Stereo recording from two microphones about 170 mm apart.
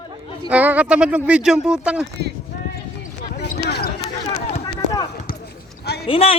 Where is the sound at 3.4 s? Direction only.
70° left (ahead or behind).